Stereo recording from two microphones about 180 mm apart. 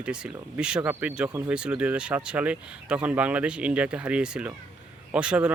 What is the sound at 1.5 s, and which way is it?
Speech, 5° right (ahead or behind).